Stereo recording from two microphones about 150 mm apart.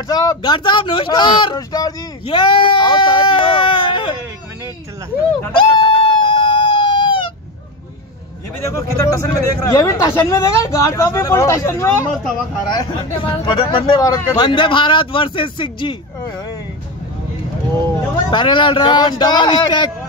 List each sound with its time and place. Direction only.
0.1 s speech: 25° left (ahead or behind)
2.2 s a sound: 35° left (ahead or behind)
5.7 s chicken: 30° left (ahead or behind)
8.6 s speech: 20° left (ahead or behind)
12.6 s speech: 30° left (ahead or behind)
18.3 s speech: 30° left (ahead or behind)